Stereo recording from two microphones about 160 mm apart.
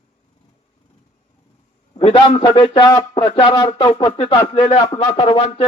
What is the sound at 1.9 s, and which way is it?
Speech, 35° left (ahead or behind).